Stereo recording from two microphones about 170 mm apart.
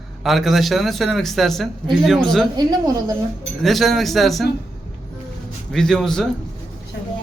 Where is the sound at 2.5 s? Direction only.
25° right (ahead or behind).